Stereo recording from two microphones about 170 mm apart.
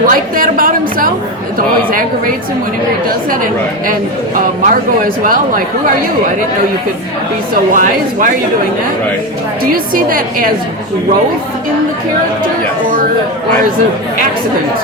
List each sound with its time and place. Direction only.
0.1 s a woman's voice: 55° right (ahead or behind)
7.7 s a woman's voice: 50° right (ahead or behind)
9.7 s speech: 55° right (ahead or behind)